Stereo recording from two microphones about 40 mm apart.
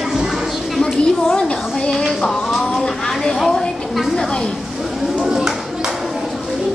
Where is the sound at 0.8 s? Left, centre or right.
Centre.